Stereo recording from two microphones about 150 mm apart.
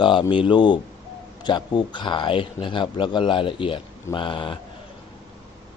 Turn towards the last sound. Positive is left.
turn(degrees=35)  # may be behind; listen again after turning